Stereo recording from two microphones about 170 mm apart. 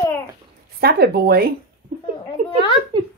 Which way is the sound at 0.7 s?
65° right (ahead or behind).